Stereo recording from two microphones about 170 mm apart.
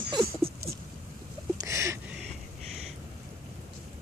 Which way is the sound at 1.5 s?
15° right (ahead or behind).